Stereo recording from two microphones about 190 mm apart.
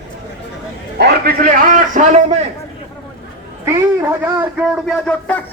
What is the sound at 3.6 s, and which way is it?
A man's voice, 15° right (ahead or behind).